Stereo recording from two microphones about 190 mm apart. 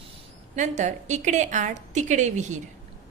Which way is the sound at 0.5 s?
40° right (ahead or behind).